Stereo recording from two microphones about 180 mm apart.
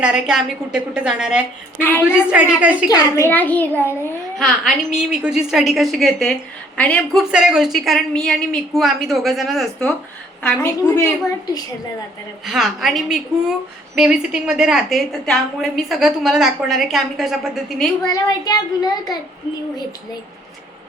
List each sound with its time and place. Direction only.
0.0 s a woman's voice: 5° right (ahead or behind)
1.8 s a child's voice: 10° left (ahead or behind)
2.3 s a woman's voice: 10° right (ahead or behind)
2.9 s a child's voice: 15° left (ahead or behind)
4.4 s a woman's voice: centre (ahead or behind)
12.5 s a woman's voice: centre (ahead or behind)
18.0 s a child's voice: 20° left (ahead or behind)